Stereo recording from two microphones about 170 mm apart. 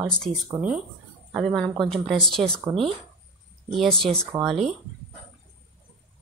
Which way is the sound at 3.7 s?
Centre (ahead or behind).